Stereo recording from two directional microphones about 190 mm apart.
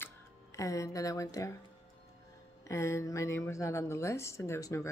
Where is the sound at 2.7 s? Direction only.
15° left (ahead or behind).